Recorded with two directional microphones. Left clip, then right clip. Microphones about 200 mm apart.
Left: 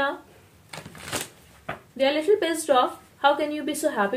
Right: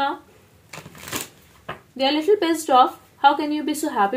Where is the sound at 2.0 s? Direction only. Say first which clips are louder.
Right 2 dB; 25° right (ahead or behind).